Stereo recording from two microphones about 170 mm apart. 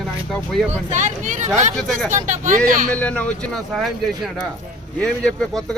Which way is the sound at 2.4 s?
50° right (ahead or behind).